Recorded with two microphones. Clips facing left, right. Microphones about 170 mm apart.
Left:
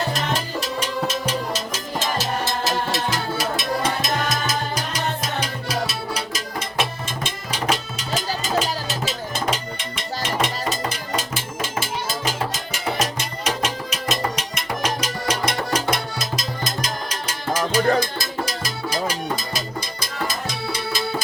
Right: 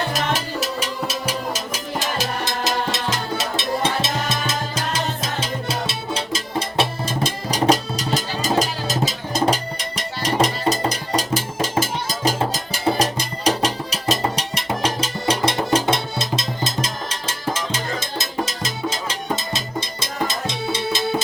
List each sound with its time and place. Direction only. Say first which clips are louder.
2.1 s music: even; 20° right (ahead or behind)